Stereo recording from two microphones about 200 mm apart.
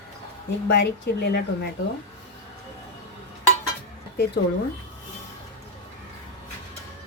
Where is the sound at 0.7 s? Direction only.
60° left (ahead or behind).